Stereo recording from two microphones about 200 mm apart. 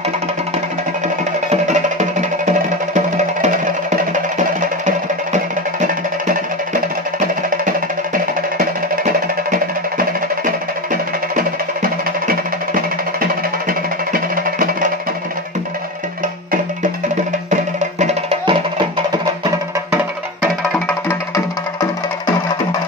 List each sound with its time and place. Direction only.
1.5 s music: 35° right (ahead or behind)
13.2 s music: 45° right (ahead or behind)
17.5 s music: 35° right (ahead or behind)